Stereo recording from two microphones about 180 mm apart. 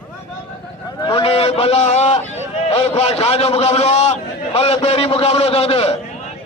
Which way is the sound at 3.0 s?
35° left (ahead or behind).